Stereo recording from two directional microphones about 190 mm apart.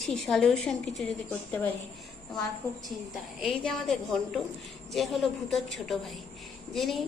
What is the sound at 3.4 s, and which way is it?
A woman's voice, centre (ahead or behind).